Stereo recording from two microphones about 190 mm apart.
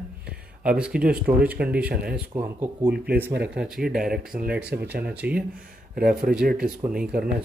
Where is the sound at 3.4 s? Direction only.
5° right (ahead or behind).